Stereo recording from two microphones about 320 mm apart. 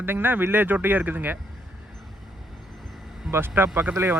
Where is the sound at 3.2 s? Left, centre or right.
Centre.